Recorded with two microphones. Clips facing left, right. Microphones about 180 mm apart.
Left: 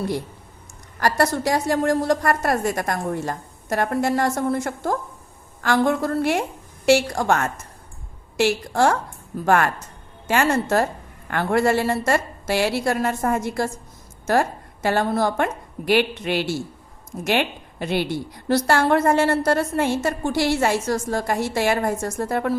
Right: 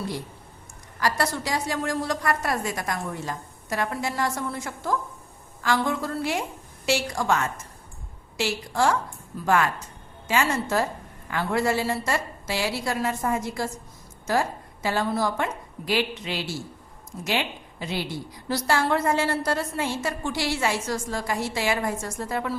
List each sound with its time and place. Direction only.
0.9 s a woman's voice: 55° left (ahead or behind)